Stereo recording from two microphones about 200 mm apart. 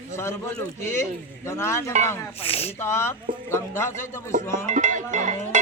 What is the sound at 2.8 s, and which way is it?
Speech, 15° left (ahead or behind).